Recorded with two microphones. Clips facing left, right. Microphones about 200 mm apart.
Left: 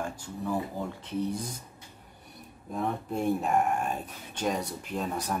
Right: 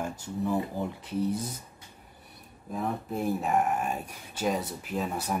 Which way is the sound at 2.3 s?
Centre (ahead or behind).